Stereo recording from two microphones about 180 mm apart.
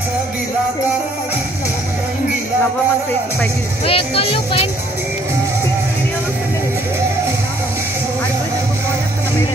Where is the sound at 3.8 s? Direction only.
30° left (ahead or behind).